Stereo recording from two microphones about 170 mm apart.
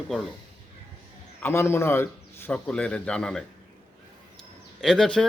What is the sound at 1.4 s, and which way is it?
Speech, 15° left (ahead or behind).